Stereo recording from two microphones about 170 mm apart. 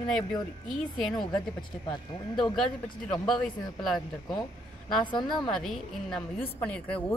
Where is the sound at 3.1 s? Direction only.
Centre (ahead or behind).